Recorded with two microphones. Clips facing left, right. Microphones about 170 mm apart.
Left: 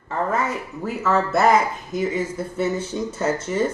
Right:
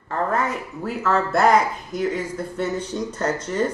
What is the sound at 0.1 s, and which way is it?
Speech, centre (ahead or behind).